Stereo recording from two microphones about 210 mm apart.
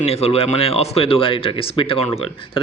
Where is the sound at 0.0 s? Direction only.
30° left (ahead or behind).